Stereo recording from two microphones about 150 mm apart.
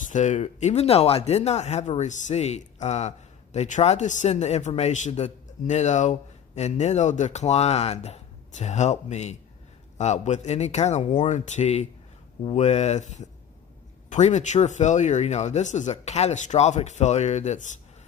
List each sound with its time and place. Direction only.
0.0 s speech: 55° left (ahead or behind)